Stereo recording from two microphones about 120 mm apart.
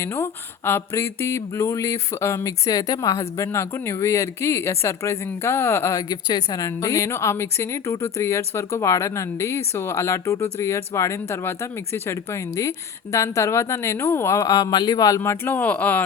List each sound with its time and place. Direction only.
0.0 s speech: 20° left (ahead or behind)